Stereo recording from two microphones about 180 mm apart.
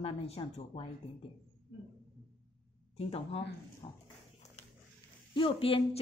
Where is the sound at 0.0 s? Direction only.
30° left (ahead or behind).